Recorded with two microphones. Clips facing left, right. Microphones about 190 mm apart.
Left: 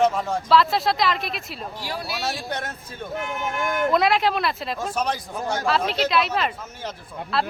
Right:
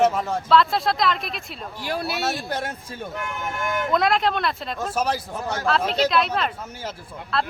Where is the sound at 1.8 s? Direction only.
60° right (ahead or behind).